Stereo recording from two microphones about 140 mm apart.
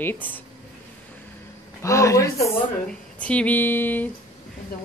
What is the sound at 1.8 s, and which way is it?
Speech, 20° left (ahead or behind).